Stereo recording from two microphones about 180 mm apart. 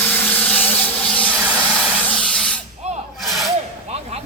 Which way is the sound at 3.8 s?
35° right (ahead or behind).